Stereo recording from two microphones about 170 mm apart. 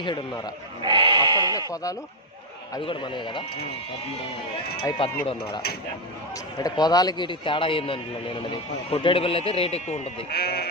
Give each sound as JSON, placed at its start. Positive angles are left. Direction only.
{"t": 0.0, "sound": "speech", "side_deg": 30}
{"t": 0.8, "sound": "goat", "side_deg": -30}
{"t": 1.7, "sound": "speech", "side_deg": 20}
{"t": 2.8, "sound": "speech", "side_deg": 30}
{"t": 4.9, "sound": "a man's voice", "side_deg": 30}
{"t": 6.6, "sound": "a man's voice", "side_deg": 25}
{"t": 10.3, "sound": "speech", "side_deg": 65}